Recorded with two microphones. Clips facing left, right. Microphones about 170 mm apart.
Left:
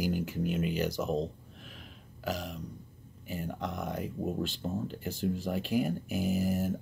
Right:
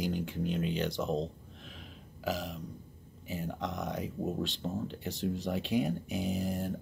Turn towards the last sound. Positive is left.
turn(degrees=5)  # may be behind; listen again after turning